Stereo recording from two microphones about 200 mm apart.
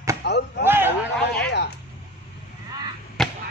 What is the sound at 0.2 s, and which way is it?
Chop, 60° left (ahead or behind).